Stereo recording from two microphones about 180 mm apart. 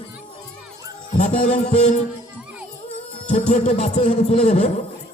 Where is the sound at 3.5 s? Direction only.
40° left (ahead or behind).